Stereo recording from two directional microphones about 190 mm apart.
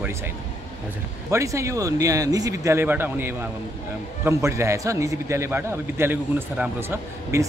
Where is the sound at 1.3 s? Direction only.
15° right (ahead or behind).